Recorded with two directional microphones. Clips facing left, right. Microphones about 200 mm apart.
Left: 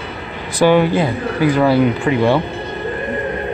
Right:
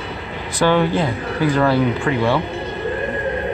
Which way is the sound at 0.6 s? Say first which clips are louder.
Left 4 dB; 10° left (ahead or behind).